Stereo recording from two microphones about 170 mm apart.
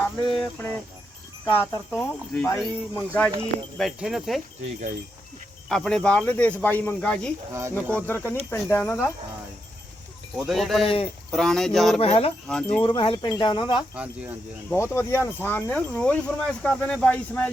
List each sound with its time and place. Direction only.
0.0 s a sound: 5° left (ahead or behind)
1.5 s speech: 10° left (ahead or behind)
3.8 s speech: centre (ahead or behind)
5.6 s speech: 5° left (ahead or behind)
7.5 s speech: 15° right (ahead or behind)
7.9 s speech: 15° left (ahead or behind)
10.3 s speech: centre (ahead or behind)
10.8 s speech: 35° left (ahead or behind)
11.3 s speech: 5° left (ahead or behind)
11.9 s speech: 35° left (ahead or behind)
12.5 s speech: 5° left (ahead or behind)
12.8 s speech: 30° left (ahead or behind)
13.9 s speech: 5° right (ahead or behind)
14.7 s speech: 15° left (ahead or behind)